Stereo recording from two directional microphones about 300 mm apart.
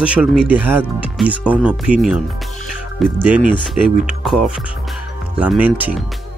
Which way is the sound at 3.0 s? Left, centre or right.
Centre.